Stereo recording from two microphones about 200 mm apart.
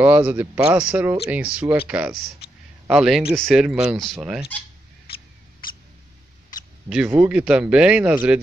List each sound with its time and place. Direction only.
0.0 s speech: 10° right (ahead or behind)
6.9 s speech: 5° right (ahead or behind)